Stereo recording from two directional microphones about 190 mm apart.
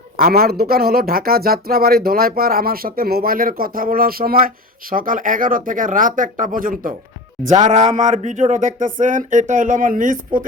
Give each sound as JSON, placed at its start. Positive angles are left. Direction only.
{"t": 0.2, "sound": "speech", "side_deg": -55}